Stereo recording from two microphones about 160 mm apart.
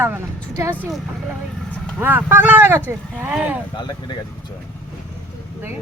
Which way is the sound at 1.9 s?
15° right (ahead or behind).